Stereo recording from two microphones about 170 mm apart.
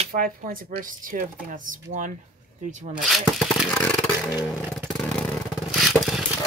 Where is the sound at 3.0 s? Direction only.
Centre (ahead or behind).